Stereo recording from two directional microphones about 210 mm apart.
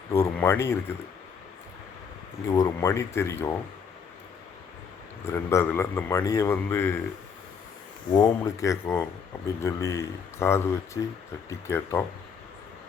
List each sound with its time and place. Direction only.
0.3 s a man's voice: 10° left (ahead or behind)
2.6 s a man's voice: 15° left (ahead or behind)
5.2 s a man's voice: 15° left (ahead or behind)
8.1 s a man's voice: 15° left (ahead or behind)